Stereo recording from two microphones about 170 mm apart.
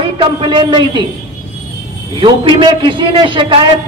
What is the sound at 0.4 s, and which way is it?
Speech, 30° right (ahead or behind).